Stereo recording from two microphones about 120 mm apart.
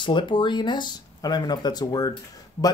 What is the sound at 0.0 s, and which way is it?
Speech, 40° left (ahead or behind).